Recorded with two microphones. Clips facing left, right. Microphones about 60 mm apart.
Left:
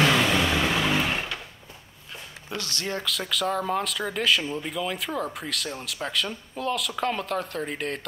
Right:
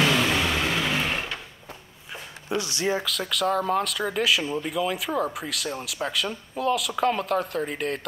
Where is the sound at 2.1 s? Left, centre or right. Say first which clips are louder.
Right 6 dB; centre.